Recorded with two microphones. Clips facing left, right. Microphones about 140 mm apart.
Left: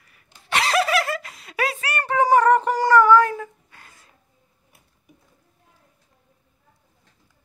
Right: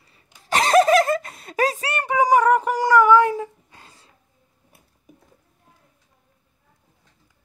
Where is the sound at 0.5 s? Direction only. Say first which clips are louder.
Right 6 dB; 40° right (ahead or behind).